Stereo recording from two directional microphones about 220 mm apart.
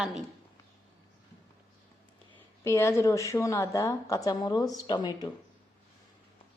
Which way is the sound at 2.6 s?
10° left (ahead or behind).